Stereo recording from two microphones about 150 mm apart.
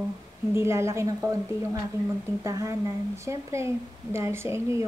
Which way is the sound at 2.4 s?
20° right (ahead or behind).